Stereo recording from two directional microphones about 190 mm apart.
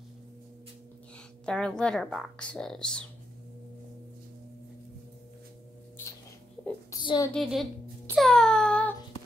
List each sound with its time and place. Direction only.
1.4 s speech: 5° left (ahead or behind)
6.9 s a woman's voice: 20° left (ahead or behind)
7.3 s speech: centre (ahead or behind)
8.1 s a sound: centre (ahead or behind)